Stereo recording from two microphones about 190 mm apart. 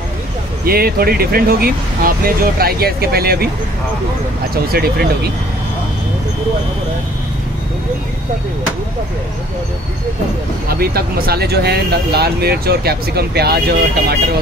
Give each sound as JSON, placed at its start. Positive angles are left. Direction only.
{"t": 0.7, "sound": "speech", "side_deg": -50}
{"t": 4.7, "sound": "speech", "side_deg": -55}
{"t": 10.7, "sound": "speech", "side_deg": -50}